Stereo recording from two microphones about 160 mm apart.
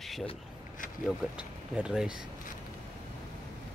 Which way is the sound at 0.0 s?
Centre (ahead or behind).